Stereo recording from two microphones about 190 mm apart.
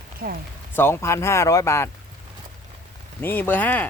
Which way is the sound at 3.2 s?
10° left (ahead or behind).